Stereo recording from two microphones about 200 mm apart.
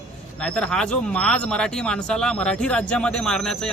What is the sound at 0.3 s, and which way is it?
Speech, 5° left (ahead or behind).